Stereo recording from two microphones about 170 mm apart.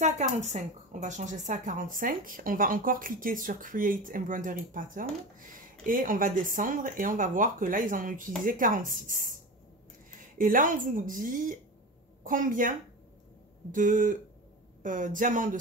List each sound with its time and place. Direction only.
0.0 s speech: 40° right (ahead or behind)